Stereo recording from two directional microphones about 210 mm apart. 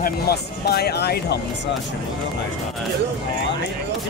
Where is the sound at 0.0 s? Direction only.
50° left (ahead or behind).